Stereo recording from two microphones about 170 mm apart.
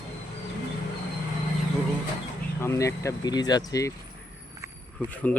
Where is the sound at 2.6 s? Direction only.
15° left (ahead or behind).